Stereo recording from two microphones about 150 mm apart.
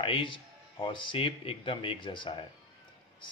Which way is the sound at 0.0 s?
35° left (ahead or behind).